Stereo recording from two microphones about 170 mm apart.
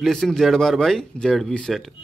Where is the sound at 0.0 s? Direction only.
5° left (ahead or behind).